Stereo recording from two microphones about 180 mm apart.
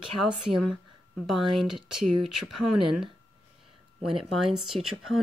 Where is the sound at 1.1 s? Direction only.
Centre (ahead or behind).